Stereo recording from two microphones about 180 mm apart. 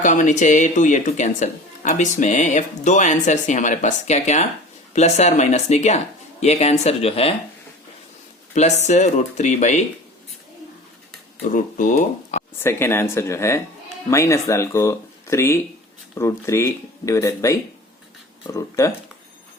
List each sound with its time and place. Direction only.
0.0 s speech: 45° left (ahead or behind)
8.5 s speech: 40° left (ahead or behind)
11.4 s speech: 45° left (ahead or behind)
12.6 s speech: 15° left (ahead or behind)